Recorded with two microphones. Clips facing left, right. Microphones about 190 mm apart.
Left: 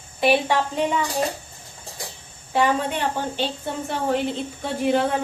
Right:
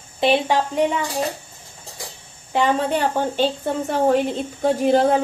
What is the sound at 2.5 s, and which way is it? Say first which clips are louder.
Speech: right 1 dB; 20° right (ahead or behind).